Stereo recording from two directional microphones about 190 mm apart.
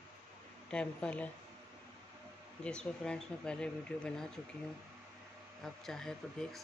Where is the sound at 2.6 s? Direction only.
5° left (ahead or behind).